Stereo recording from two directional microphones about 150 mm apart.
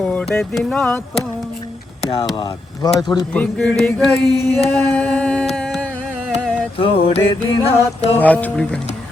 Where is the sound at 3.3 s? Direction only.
10° left (ahead or behind).